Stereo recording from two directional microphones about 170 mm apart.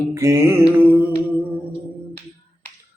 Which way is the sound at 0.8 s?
10° right (ahead or behind).